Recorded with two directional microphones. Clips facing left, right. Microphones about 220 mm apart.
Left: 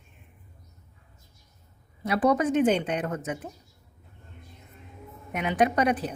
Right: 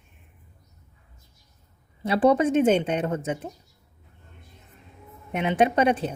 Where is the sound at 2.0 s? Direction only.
30° right (ahead or behind).